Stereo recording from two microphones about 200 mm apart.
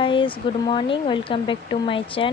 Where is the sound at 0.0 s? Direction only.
25° left (ahead or behind).